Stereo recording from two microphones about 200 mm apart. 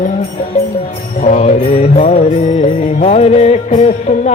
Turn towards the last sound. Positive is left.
turn(degrees=35)  # may be behind; listen again after turning